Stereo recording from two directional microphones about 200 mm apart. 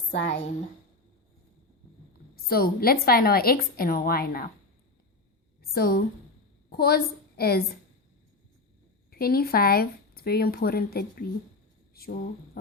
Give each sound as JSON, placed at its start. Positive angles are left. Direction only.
{"t": 0.1, "sound": "a woman's voice", "side_deg": 60}
{"t": 2.3, "sound": "speech", "side_deg": 50}
{"t": 5.7, "sound": "a woman's voice", "side_deg": 50}
{"t": 9.0, "sound": "speech", "side_deg": 50}
{"t": 12.0, "sound": "mantra", "side_deg": 50}